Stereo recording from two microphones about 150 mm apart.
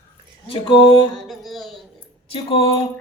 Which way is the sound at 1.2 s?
Centre (ahead or behind).